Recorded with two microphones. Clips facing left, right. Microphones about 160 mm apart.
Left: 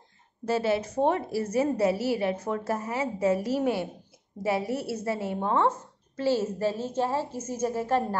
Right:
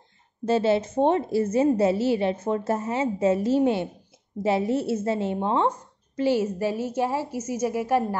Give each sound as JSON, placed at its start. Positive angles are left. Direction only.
{"t": 0.5, "sound": "a woman's voice", "side_deg": -25}